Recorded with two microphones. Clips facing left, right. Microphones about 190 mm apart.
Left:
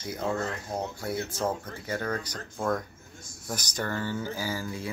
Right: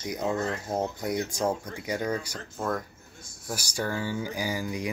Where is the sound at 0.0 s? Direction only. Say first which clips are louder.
Right 2 dB; 15° right (ahead or behind).